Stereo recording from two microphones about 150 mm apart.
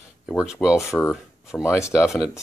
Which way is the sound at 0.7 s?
15° left (ahead or behind).